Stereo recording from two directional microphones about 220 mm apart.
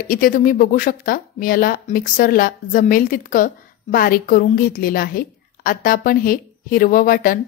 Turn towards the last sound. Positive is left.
turn(degrees=40)  # may be behind; listen again after turning